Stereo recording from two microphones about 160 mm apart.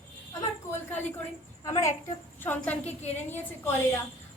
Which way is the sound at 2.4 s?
10° left (ahead or behind).